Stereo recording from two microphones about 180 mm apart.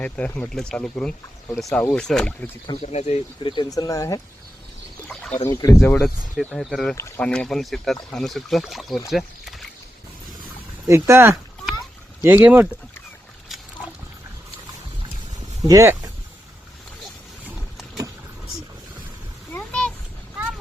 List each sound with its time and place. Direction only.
0.0 s speech: 5° left (ahead or behind)
2.8 s speech: 35° left (ahead or behind); by 4.2 s 20° left (ahead or behind)
5.0 s a sound: 5° left (ahead or behind)
5.5 s speech: 15° left (ahead or behind); by 9.6 s centre (ahead or behind)
10.8 s speech: 15° right (ahead or behind)
15.6 s speech: 15° right (ahead or behind)
19.5 s a sound: 5° left (ahead or behind)